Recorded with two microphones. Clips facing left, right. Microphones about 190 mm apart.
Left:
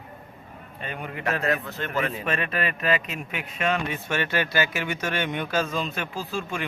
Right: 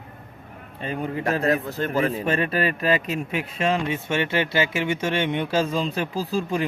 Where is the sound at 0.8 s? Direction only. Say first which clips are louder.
Right 7 dB; 30° right (ahead or behind).